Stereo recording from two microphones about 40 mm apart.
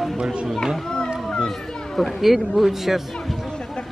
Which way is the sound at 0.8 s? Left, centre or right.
Left.